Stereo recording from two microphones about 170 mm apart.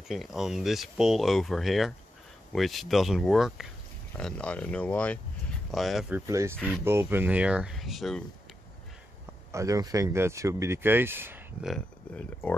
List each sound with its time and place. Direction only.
0.1 s speech: centre (ahead or behind)
6.2 s speech: 15° right (ahead or behind)
6.5 s speech: 5° left (ahead or behind)
6.8 s speech: 15° right (ahead or behind)
9.5 s speech: 20° right (ahead or behind)
11.6 s speech: centre (ahead or behind)